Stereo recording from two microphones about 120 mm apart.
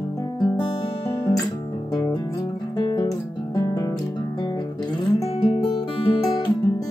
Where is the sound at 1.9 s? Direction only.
30° left (ahead or behind).